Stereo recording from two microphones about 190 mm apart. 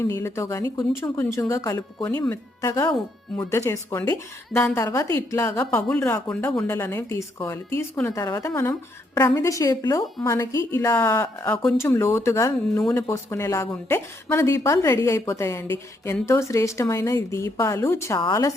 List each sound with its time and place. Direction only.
0.0 s a woman's voice: 15° left (ahead or behind)